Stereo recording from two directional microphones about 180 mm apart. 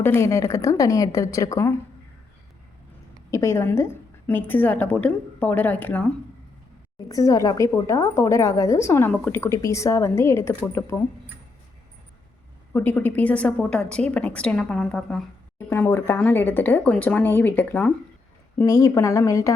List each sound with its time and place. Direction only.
0.0 s a woman's voice: 15° left (ahead or behind)
3.3 s a woman's voice: 15° left (ahead or behind)
7.1 s a woman's voice: 20° left (ahead or behind)
12.7 s a woman's voice: 10° left (ahead or behind)